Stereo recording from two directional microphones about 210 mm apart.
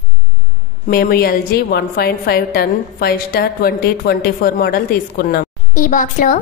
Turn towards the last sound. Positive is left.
turn(degrees=40)  # may be behind; listen again after turning